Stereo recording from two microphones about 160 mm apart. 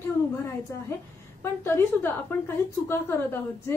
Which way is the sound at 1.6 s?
15° left (ahead or behind).